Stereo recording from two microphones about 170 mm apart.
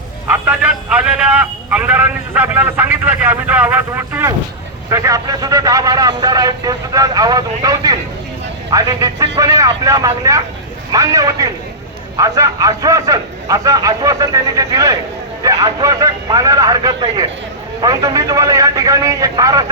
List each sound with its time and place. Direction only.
0.3 s a man's voice: 10° right (ahead or behind)